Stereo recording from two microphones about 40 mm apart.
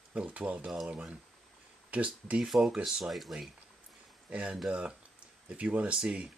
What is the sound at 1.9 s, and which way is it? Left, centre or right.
Speech, right.